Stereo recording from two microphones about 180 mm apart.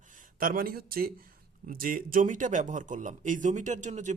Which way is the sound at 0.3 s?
50° right (ahead or behind).